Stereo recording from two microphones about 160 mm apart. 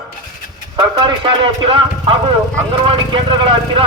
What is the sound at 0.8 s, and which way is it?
Speech, 30° right (ahead or behind).